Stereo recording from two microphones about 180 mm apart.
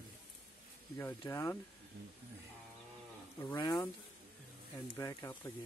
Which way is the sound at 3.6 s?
20° left (ahead or behind).